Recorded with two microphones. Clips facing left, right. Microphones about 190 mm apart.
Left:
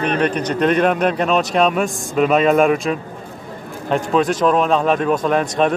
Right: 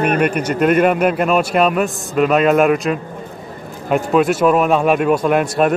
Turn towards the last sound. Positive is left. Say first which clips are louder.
# right 2 dB
turn(degrees=-5)  # may be behind; listen again after turning